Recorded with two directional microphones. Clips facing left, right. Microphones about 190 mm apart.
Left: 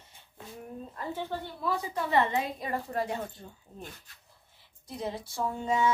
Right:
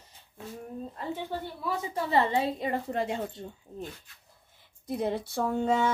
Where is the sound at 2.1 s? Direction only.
30° right (ahead or behind).